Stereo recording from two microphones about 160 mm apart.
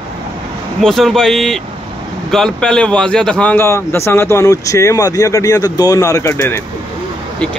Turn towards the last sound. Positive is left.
turn(degrees=15)  # may be behind; listen again after turning